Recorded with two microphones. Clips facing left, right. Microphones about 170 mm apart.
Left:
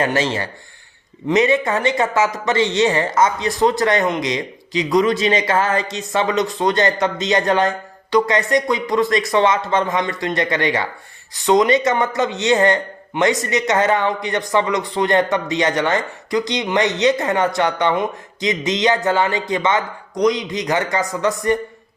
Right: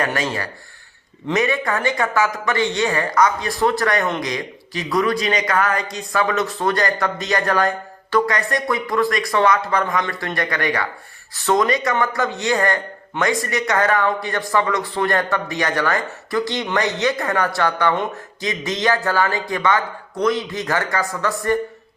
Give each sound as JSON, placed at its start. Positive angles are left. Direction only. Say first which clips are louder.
{"t": 0.0, "sound": "a man's voice", "louder": "left 3 dB", "side_deg": 25}